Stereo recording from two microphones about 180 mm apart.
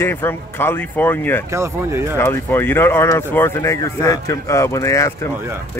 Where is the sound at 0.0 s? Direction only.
10° left (ahead or behind).